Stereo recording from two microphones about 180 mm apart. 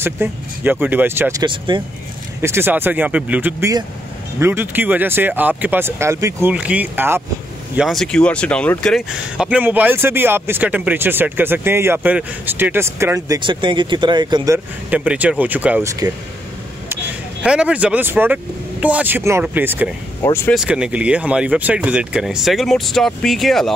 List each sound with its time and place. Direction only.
0.0 s speech: 10° right (ahead or behind)
1.4 s speech: 25° right (ahead or behind)
2.4 s speech: 10° right (ahead or behind)
7.7 s speech: centre (ahead or behind)
13.4 s speech: 25° right (ahead or behind)
14.9 s speech: 10° right (ahead or behind)
16.9 s speech: 5° right (ahead or behind)
20.2 s speech: 15° left (ahead or behind)
20.5 s speech: 5° right (ahead or behind)